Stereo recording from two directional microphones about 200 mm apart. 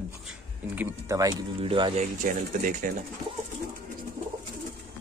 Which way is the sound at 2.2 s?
40° right (ahead or behind).